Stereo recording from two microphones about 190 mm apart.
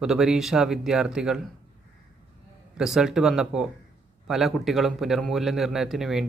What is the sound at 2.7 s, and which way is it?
Speech, 5° right (ahead or behind).